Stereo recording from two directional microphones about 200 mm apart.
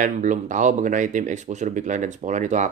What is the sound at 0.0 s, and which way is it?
Speech, 40° right (ahead or behind).